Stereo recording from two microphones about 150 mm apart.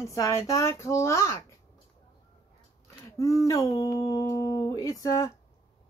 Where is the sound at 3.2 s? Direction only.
20° left (ahead or behind).